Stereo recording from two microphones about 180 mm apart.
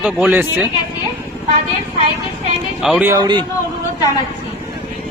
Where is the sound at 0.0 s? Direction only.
5° right (ahead or behind).